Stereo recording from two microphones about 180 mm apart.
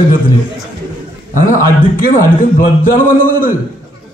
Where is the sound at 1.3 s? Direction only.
50° left (ahead or behind).